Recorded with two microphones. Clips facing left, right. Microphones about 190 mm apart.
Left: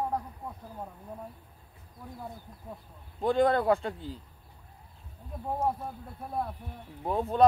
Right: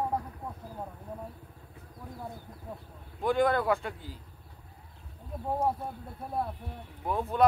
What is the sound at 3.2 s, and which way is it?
Speech, 30° left (ahead or behind).